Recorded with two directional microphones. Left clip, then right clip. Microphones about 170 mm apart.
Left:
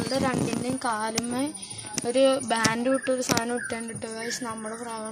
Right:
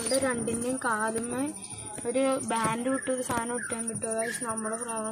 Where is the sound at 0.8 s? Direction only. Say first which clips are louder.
Left 1 dB; 15° left (ahead or behind).